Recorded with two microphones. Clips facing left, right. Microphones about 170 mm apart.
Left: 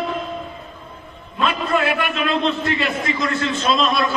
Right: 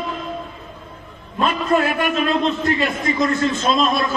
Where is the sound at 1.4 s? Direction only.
40° right (ahead or behind).